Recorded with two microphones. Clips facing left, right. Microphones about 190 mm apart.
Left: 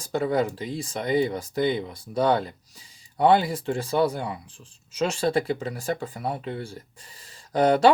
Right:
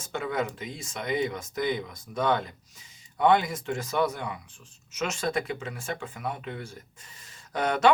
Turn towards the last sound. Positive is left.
turn(degrees=30)  # may be behind; listen again after turning